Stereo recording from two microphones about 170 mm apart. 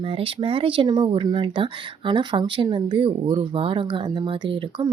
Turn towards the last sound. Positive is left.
turn(degrees=-30)  # may be behind; listen again after turning